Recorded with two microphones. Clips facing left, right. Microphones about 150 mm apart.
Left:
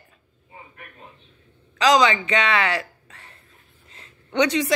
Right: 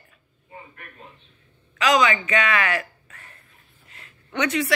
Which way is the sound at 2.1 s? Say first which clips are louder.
Left 1 dB; 25° left (ahead or behind).